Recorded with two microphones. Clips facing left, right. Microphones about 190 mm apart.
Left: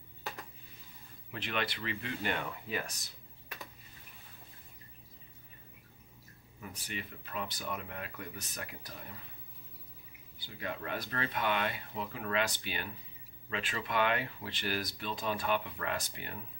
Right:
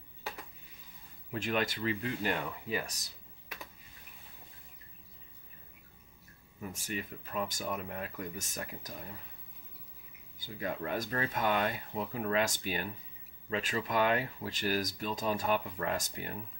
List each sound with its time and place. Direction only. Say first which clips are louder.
1.3 s speech: right 4 dB; 40° right (ahead or behind)
2.2 s speech: even; 5° right (ahead or behind)
6.7 s speech: right 4 dB; 40° right (ahead or behind)
10.4 s speech: right 4 dB; 40° right (ahead or behind)